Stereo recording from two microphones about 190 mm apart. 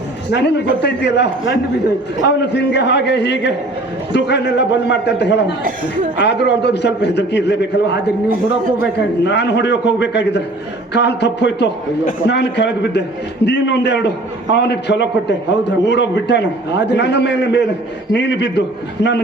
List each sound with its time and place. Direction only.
0.3 s a man's voice: 65° left (ahead or behind)